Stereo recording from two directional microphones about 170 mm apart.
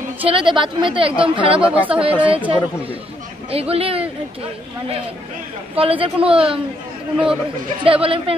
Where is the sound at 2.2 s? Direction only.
30° right (ahead or behind).